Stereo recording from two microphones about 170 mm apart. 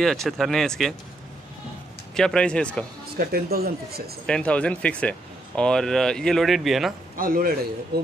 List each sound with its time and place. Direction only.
0.0 s speech: centre (ahead or behind)
2.1 s speech: 5° left (ahead or behind)
3.2 s speech: 65° right (ahead or behind)
4.3 s speech: 5° left (ahead or behind)
7.2 s speech: 55° right (ahead or behind)
7.9 s speech: 70° right (ahead or behind)